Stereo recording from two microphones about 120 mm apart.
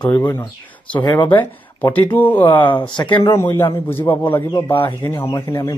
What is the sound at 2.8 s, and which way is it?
Speech, 40° left (ahead or behind).